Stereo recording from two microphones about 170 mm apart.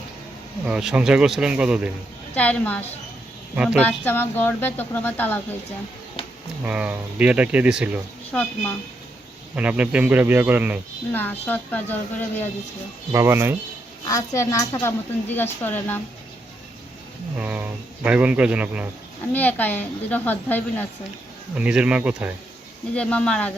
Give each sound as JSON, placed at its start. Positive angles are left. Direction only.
{"t": 0.7, "sound": "speech", "side_deg": -5}
{"t": 2.3, "sound": "speech", "side_deg": 10}
{"t": 3.5, "sound": "speech", "side_deg": -5}
{"t": 3.8, "sound": "speech", "side_deg": 10}
{"t": 6.7, "sound": "a man's voice", "side_deg": -10}
{"t": 8.3, "sound": "speech", "side_deg": 5}
{"t": 9.6, "sound": "a man's voice", "side_deg": -10}
{"t": 11.1, "sound": "speech", "side_deg": 10}
{"t": 13.1, "sound": "a man's voice", "side_deg": -15}
{"t": 14.0, "sound": "speech", "side_deg": 15}
{"t": 17.3, "sound": "a man's voice", "side_deg": -10}
{"t": 19.3, "sound": "speech", "side_deg": 10}
{"t": 21.5, "sound": "a man's voice", "side_deg": -5}
{"t": 23.0, "sound": "speech", "side_deg": 5}